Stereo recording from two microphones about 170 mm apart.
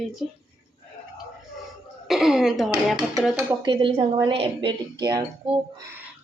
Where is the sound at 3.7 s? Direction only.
30° right (ahead or behind).